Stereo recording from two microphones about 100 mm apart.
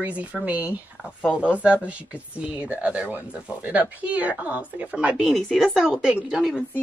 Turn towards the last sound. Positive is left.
turn(degrees=-5)  # may be behind; listen again after turning